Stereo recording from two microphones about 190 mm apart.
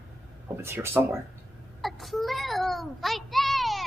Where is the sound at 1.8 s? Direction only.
Centre (ahead or behind).